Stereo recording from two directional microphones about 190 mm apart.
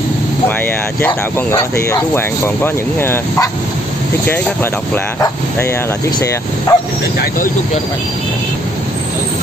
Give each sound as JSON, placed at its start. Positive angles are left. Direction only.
{"t": 1.0, "sound": "speech", "side_deg": 15}
{"t": 6.1, "sound": "speech", "side_deg": 20}